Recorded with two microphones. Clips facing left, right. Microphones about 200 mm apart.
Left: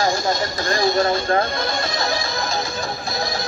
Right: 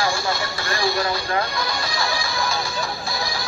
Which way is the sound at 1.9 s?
20° left (ahead or behind).